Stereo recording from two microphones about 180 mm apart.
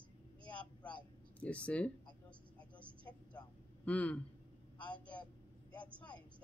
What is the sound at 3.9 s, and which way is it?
Speech, 10° left (ahead or behind).